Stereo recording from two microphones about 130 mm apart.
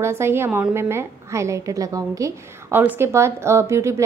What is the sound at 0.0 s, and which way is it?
A woman's voice, 20° right (ahead or behind).